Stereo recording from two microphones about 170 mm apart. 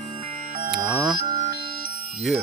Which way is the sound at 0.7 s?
25° right (ahead or behind).